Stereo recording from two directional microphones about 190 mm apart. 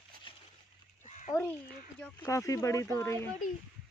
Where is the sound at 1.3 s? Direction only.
10° left (ahead or behind).